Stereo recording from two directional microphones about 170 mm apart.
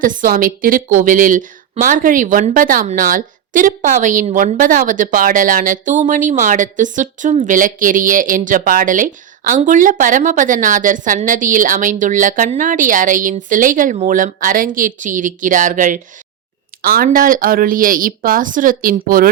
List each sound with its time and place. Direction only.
0.0 s a woman's voice: 50° right (ahead or behind)